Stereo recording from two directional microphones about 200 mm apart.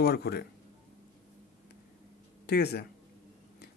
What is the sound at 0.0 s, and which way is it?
Speech, 50° left (ahead or behind).